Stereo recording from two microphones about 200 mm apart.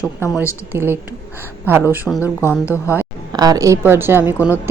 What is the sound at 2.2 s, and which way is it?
Speech, 15° left (ahead or behind).